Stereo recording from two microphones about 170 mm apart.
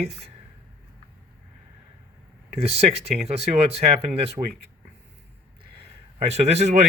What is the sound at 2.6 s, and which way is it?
Speech, 35° right (ahead or behind).